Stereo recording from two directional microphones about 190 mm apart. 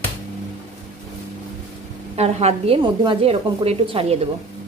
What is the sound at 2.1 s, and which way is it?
A woman's voice, 35° right (ahead or behind).